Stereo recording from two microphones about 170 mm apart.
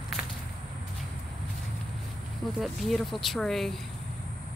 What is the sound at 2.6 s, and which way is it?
Speech, centre (ahead or behind).